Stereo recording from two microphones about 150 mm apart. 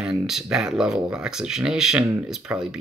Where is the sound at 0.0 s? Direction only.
5° right (ahead or behind).